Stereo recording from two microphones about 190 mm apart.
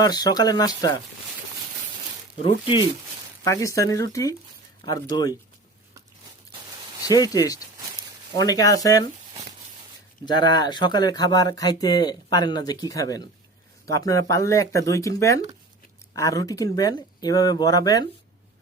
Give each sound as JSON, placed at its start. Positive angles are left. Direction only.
{"t": 0.0, "sound": "speech", "side_deg": 20}
{"t": 2.4, "sound": "speech", "side_deg": 30}
{"t": 3.4, "sound": "speech", "side_deg": 15}
{"t": 7.0, "sound": "speech", "side_deg": 20}
{"t": 10.2, "sound": "speech", "side_deg": 20}